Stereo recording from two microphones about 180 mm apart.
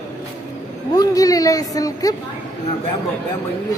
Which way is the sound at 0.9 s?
20° left (ahead or behind).